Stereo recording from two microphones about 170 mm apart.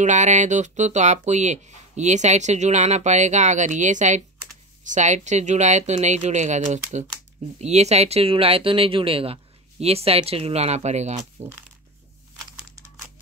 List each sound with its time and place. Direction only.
0.0 s speech: 45° right (ahead or behind)